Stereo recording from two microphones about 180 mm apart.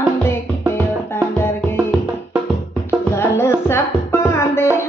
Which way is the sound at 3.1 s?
15° left (ahead or behind).